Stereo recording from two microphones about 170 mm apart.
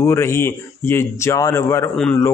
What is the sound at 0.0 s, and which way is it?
A man's voice, 15° left (ahead or behind).